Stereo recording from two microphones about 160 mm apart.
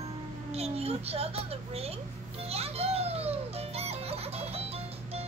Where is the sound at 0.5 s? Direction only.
40° right (ahead or behind).